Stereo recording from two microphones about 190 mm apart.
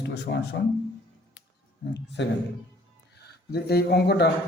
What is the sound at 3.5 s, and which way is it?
Speech, 60° left (ahead or behind).